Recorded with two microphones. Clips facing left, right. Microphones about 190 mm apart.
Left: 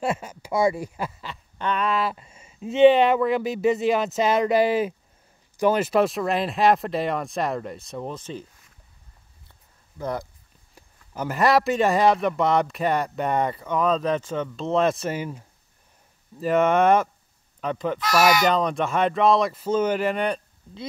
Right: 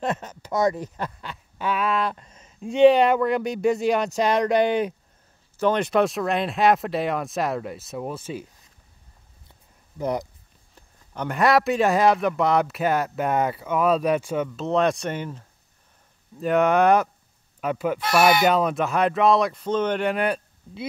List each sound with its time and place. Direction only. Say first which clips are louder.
0.0 s speech: left 1 dB; 10° left (ahead or behind); by 8.5 s 10° right (ahead or behind)
9.9 s speech: right 3 dB; 15° right (ahead or behind)
10.7 s speech: left 1 dB; 5° left (ahead or behind)